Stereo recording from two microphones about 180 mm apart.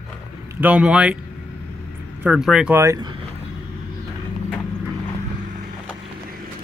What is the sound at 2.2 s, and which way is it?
Speech, 5° right (ahead or behind).